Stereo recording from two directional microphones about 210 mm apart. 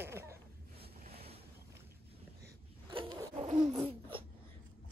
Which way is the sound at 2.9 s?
25° right (ahead or behind).